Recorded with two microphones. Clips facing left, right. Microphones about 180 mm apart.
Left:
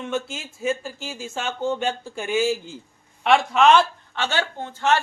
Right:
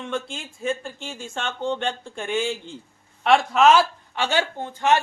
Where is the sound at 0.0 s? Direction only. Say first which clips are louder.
Left 2 dB; 5° left (ahead or behind).